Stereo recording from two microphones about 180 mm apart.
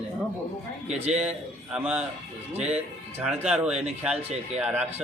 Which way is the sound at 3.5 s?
5° right (ahead or behind).